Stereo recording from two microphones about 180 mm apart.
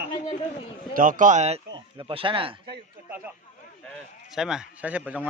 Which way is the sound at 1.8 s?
25° right (ahead or behind).